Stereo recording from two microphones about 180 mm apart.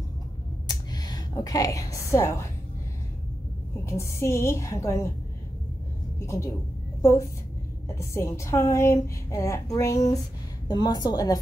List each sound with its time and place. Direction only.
0.7 s a sound: 20° left (ahead or behind)
3.8 s a woman's voice: 15° left (ahead or behind)
6.1 s a woman's voice: 15° left (ahead or behind)